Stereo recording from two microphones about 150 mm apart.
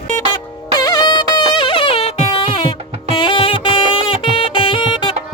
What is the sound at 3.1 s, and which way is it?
Music, 30° left (ahead or behind).